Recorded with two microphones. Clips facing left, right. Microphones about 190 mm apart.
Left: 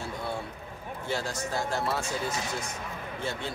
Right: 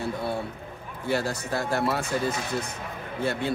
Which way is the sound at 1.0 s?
60° right (ahead or behind).